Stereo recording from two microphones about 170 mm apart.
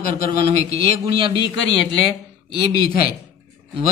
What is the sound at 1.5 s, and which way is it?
Speech, 90° left.